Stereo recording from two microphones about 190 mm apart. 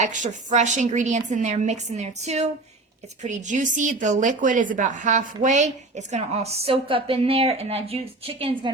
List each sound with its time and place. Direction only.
0.0 s a woman's voice: 40° right (ahead or behind)